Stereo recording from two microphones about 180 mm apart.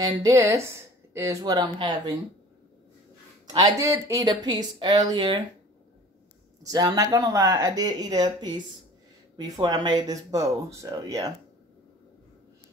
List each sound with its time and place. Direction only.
0.0 s speech: 20° right (ahead or behind)
3.4 s speech: 20° right (ahead or behind)
6.6 s speech: 20° right (ahead or behind)